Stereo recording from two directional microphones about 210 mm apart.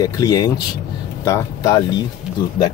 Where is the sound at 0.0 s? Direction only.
15° left (ahead or behind).